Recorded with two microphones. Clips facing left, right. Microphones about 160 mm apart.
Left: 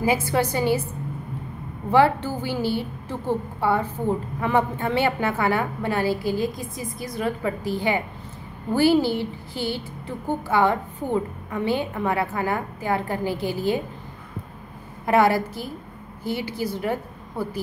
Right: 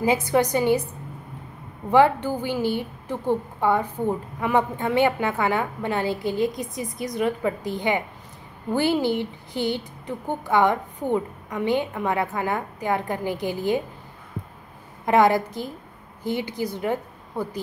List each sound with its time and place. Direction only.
0.0 s a woman's voice: 20° right (ahead or behind)
1.9 s a woman's voice: 15° right (ahead or behind)
15.0 s a woman's voice: 20° right (ahead or behind)